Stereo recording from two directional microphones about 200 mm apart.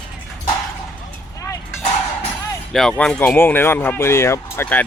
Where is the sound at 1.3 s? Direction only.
15° left (ahead or behind).